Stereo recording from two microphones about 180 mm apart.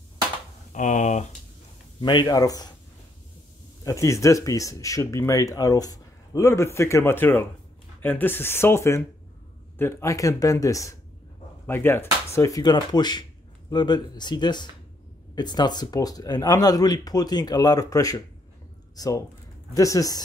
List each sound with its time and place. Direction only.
0.7 s speech: 45° left (ahead or behind)
2.0 s speech: 25° left (ahead or behind)
3.8 s speech: 15° left (ahead or behind)